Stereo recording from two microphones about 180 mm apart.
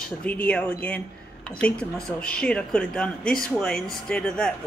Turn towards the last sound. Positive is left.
turn(degrees=5)  # may be behind; listen again after turning